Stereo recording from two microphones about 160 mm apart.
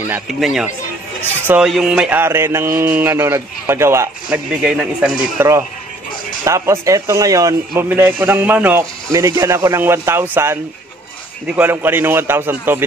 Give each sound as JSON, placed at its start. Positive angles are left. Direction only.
{"t": 0.1, "sound": "speech", "side_deg": 0}
{"t": 4.5, "sound": "speech", "side_deg": -5}
{"t": 6.4, "sound": "speech", "side_deg": -20}